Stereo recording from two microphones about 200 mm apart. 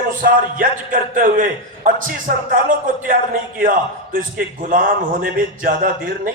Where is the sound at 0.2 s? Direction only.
45° right (ahead or behind).